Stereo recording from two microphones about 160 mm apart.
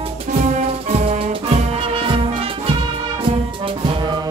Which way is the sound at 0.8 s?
35° right (ahead or behind).